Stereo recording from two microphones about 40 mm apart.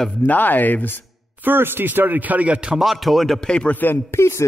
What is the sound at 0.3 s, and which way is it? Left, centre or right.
Speech, left.